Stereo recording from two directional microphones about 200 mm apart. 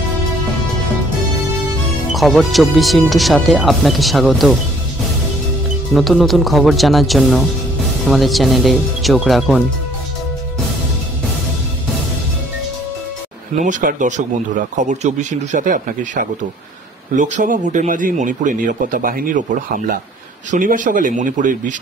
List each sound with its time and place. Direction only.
2.1 s speech: centre (ahead or behind)
5.9 s speech: centre (ahead or behind)
13.6 s speech: 40° right (ahead or behind)
20.5 s speech: 40° right (ahead or behind)